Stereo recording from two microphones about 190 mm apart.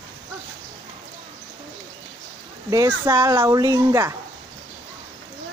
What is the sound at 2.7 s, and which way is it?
Speech, 15° right (ahead or behind).